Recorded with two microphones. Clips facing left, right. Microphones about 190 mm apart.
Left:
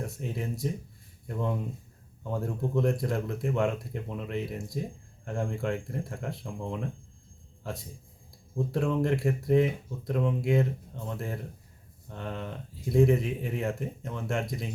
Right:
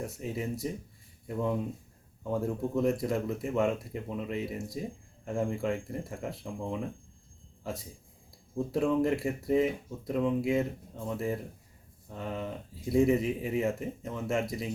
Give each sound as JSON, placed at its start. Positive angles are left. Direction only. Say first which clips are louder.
{"t": 0.0, "sound": "speech", "louder": "even", "side_deg": -5}
{"t": 2.2, "sound": "speech", "louder": "right 1 dB", "side_deg": -5}
{"t": 8.5, "sound": "speech", "louder": "right 1 dB", "side_deg": -5}